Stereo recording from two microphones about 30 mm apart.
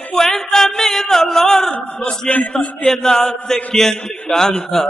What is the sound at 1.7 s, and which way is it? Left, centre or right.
Speech, left.